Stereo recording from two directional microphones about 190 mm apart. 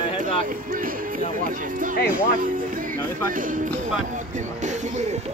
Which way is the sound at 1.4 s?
45° right (ahead or behind).